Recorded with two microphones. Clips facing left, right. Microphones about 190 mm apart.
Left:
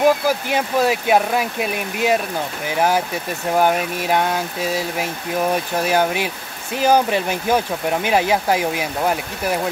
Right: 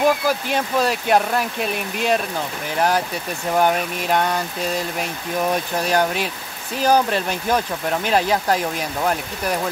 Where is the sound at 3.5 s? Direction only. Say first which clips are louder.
Left 1 dB; 5° left (ahead or behind).